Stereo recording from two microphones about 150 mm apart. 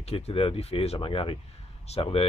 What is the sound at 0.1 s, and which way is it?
Speech, 40° left (ahead or behind).